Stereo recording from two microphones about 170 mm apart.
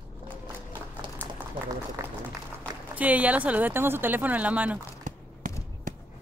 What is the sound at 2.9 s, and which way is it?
Speech, 10° right (ahead or behind).